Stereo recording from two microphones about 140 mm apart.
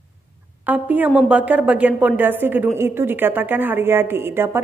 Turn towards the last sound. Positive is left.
turn(degrees=-15)  # may be behind; listen again after turning